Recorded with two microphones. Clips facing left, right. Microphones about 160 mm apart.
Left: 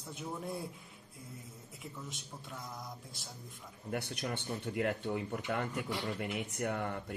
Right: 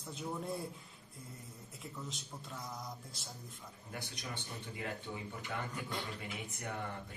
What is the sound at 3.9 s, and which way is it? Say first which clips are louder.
Speech: left 8 dB; 65° left (ahead or behind).